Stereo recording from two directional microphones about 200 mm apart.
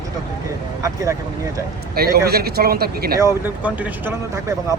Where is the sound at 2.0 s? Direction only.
50° right (ahead or behind).